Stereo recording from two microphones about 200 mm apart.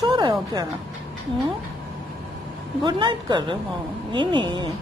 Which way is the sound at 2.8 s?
25° right (ahead or behind).